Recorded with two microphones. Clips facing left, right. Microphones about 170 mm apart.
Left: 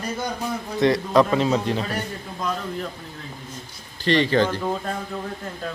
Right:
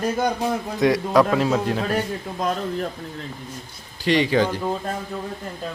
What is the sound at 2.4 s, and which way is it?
Speech, 45° right (ahead or behind).